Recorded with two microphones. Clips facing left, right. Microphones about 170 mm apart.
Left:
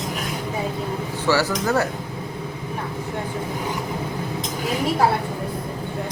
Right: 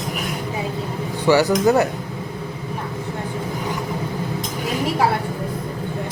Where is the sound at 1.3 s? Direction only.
15° right (ahead or behind).